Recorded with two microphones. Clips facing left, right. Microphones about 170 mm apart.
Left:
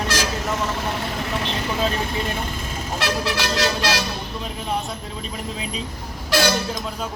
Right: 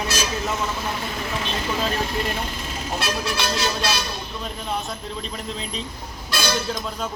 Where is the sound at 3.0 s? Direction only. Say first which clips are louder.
Left 3 dB; 80° left.